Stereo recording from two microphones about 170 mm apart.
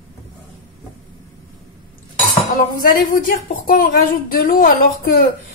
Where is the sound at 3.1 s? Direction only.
55° left (ahead or behind).